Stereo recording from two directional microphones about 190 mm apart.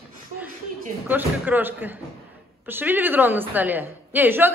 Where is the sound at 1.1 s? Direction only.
10° right (ahead or behind).